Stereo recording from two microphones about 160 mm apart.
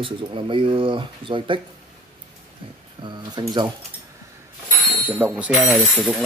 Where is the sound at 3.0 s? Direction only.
25° right (ahead or behind).